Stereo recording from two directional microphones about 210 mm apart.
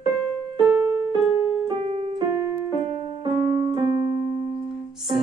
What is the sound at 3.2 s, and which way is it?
Keyboard, 20° right (ahead or behind).